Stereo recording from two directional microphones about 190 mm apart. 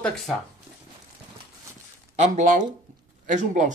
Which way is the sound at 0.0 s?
Centre (ahead or behind).